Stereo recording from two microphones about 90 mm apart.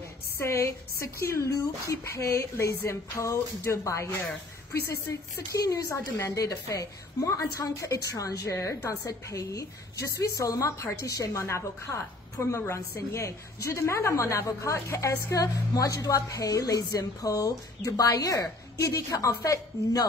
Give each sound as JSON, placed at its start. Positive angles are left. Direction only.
{"t": 0.4, "sound": "a woman's voice", "side_deg": 30}
{"t": 5.5, "sound": "a woman's voice", "side_deg": 40}